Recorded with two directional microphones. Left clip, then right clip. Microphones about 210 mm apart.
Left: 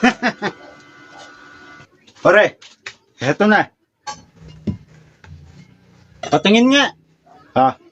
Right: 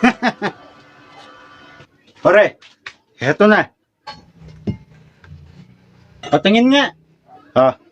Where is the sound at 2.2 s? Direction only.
10° left (ahead or behind).